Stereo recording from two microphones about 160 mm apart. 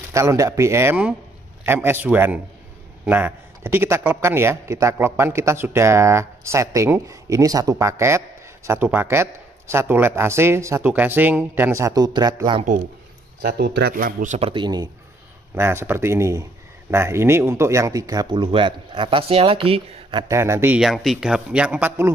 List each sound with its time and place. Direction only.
0.1 s a man's voice: 20° right (ahead or behind)
13.4 s speech: 80° right; by 14.5 s 50° right (ahead or behind)
14.5 s speech: 25° right (ahead or behind)
15.5 s a man's voice: 15° right (ahead or behind); by 20.2 s 35° right (ahead or behind)
20.2 s a man's voice: 20° right (ahead or behind)
20.8 s a man's voice: centre (ahead or behind)